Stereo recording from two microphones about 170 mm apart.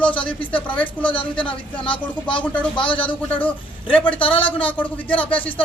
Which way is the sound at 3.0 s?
10° left (ahead or behind).